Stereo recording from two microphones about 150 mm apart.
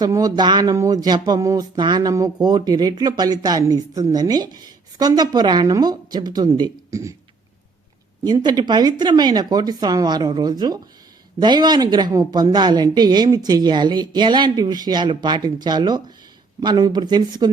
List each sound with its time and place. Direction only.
0.0 s speech: 25° right (ahead or behind)
8.2 s speech: 30° right (ahead or behind)